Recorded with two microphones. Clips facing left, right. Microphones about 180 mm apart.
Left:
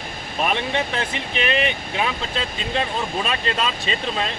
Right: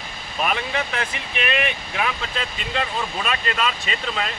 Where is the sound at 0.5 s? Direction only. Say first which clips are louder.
Left 2 dB; 30° left (ahead or behind).